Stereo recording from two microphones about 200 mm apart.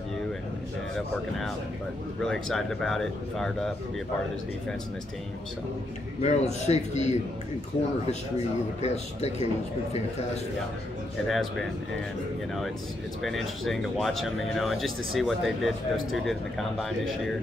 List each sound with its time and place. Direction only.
2.2 s speech: centre (ahead or behind)
6.2 s speech: 35° left (ahead or behind)
8.8 s speech: 35° left (ahead or behind)
11.2 s speech: centre (ahead or behind)
13.2 s speech: centre (ahead or behind)